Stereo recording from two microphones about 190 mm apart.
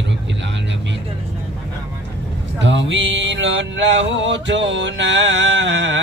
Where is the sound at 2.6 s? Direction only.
70° right (ahead or behind).